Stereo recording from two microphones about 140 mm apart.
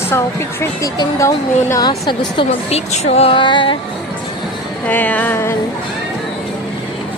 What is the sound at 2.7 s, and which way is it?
Music, 50° left (ahead or behind).